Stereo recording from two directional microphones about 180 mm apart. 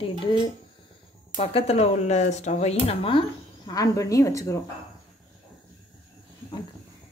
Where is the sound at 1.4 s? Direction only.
35° left (ahead or behind); by 4.5 s 20° left (ahead or behind).